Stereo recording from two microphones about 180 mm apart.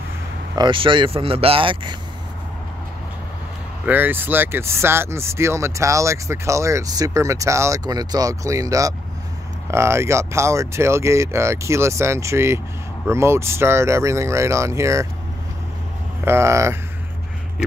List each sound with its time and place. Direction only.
0.6 s speech: 25° right (ahead or behind)
3.8 s speech: 10° right (ahead or behind)
16.3 s speech: 15° right (ahead or behind)